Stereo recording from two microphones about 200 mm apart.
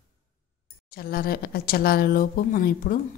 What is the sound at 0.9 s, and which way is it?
Speech, 50° left (ahead or behind).